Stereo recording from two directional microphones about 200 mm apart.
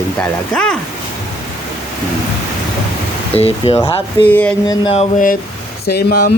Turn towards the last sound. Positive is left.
turn(degrees=55)  # may be behind; listen again after turning